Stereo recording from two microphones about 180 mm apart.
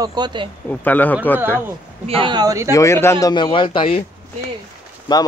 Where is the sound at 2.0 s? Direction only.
30° right (ahead or behind).